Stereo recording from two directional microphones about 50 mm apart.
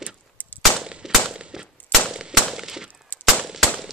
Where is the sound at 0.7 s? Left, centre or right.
Centre.